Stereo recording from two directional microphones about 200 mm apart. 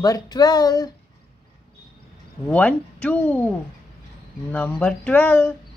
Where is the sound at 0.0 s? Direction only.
20° left (ahead or behind).